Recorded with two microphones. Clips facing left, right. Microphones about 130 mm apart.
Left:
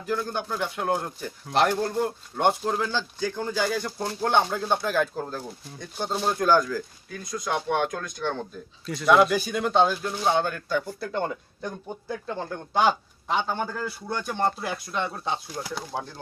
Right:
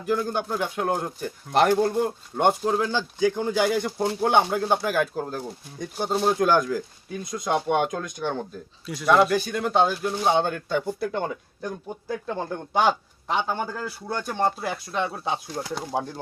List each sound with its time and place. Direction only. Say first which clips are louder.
0.0 s speech: right 3 dB; 15° right (ahead or behind)
2.5 s speech: right 3 dB; 5° right (ahead or behind)
6.4 s speech: right 1 dB; 20° right (ahead or behind)
9.0 s speech: even; centre (ahead or behind); by 11.1 s 20° right (ahead or behind)
11.1 s speech: even; 5° right (ahead or behind)
12.8 s speech: even; centre (ahead or behind); by 16.1 s 15° right (ahead or behind)